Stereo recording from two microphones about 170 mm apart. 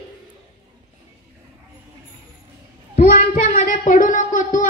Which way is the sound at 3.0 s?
50° left (ahead or behind).